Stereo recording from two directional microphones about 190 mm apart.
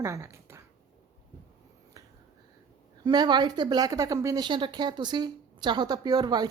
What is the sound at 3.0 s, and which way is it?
A woman's voice, 25° right (ahead or behind).